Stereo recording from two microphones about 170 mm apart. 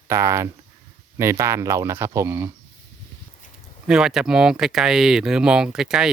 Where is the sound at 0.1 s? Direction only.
15° right (ahead or behind).